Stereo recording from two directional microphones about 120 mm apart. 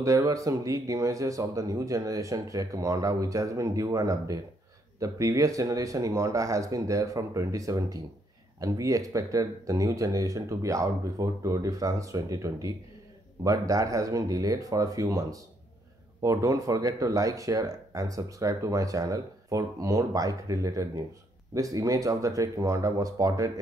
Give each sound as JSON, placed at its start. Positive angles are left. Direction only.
{"t": 0.0, "sound": "speech", "side_deg": -25}